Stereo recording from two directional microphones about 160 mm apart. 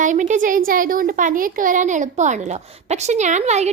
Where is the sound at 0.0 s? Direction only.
50° right (ahead or behind).